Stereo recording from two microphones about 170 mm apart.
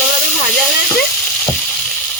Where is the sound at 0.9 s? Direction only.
Centre (ahead or behind).